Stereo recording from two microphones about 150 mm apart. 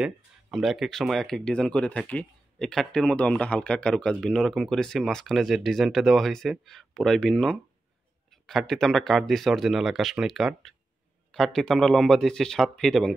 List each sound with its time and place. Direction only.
0.0 s speech: centre (ahead or behind)